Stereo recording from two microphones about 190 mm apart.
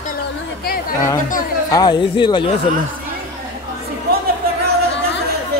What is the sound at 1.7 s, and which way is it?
Speech, 20° left (ahead or behind).